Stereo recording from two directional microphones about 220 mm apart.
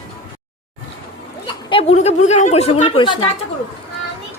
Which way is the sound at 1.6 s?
25° left (ahead or behind).